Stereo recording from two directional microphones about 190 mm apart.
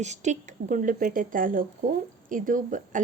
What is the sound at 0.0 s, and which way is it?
A woman's voice, 40° right (ahead or behind).